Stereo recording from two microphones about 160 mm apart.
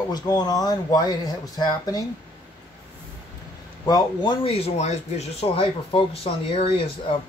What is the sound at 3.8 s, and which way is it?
Speech, 30° left (ahead or behind).